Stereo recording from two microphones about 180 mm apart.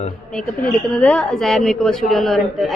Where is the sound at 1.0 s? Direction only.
5° left (ahead or behind).